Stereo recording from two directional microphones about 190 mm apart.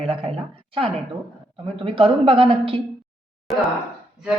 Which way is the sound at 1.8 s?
25° right (ahead or behind).